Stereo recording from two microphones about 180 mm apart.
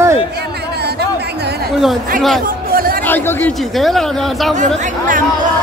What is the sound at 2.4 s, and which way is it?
Chatter, 55° right (ahead or behind).